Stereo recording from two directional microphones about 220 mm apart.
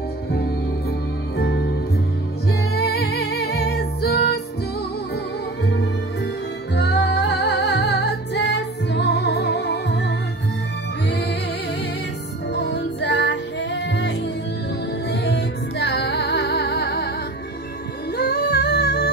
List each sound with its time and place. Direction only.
1.4 s music: 50° left (ahead or behind)
2.7 s music: 45° left (ahead or behind)
6.7 s music: 50° left (ahead or behind)
12.5 s music: 50° left (ahead or behind)
18.1 s music: 45° left (ahead or behind)